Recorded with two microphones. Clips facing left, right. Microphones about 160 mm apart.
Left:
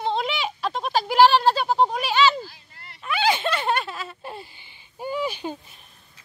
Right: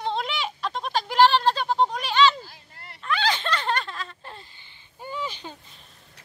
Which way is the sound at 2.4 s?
50° right (ahead or behind).